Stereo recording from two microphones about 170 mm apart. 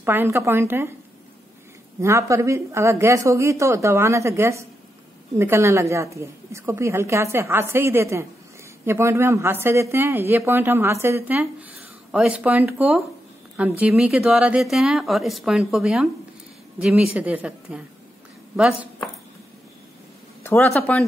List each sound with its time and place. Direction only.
0.0 s a woman's voice: 15° right (ahead or behind)
2.0 s a woman's voice: 15° right (ahead or behind)
20.4 s speech: 15° left (ahead or behind)